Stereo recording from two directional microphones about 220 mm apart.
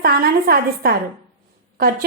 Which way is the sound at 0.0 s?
45° right (ahead or behind).